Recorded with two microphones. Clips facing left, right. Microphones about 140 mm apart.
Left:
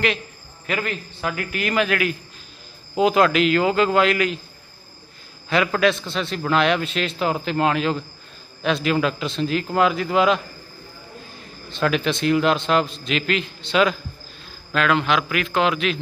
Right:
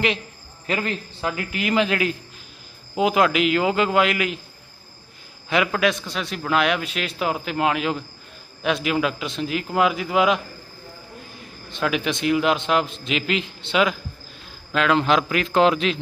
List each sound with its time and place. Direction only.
0.7 s a man's voice: 25° right (ahead or behind)
3.0 s a man's voice: 10° right (ahead or behind)
5.5 s a man's voice: 10° right (ahead or behind)
11.7 s a man's voice: 10° right (ahead or behind)
15.0 s a man's voice: 35° right (ahead or behind)